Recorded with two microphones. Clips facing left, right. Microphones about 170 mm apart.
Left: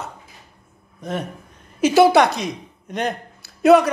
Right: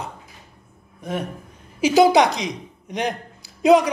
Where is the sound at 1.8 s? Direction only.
10° right (ahead or behind).